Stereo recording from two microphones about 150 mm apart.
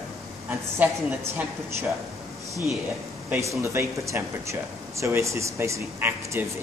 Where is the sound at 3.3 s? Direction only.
20° right (ahead or behind).